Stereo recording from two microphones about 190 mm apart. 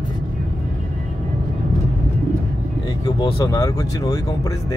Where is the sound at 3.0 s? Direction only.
20° left (ahead or behind).